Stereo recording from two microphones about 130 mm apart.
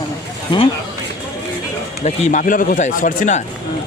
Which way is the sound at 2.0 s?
70° left (ahead or behind).